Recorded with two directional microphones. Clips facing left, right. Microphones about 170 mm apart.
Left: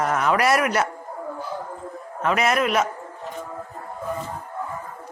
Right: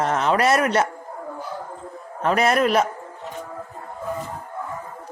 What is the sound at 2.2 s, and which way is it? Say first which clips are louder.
Speech: right 2 dB; 35° right (ahead or behind).